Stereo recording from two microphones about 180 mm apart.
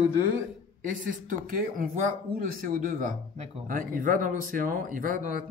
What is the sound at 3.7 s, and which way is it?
Speech, 50° right (ahead or behind).